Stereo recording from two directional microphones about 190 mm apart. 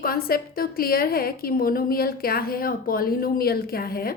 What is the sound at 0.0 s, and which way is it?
A woman's voice, 50° left (ahead or behind).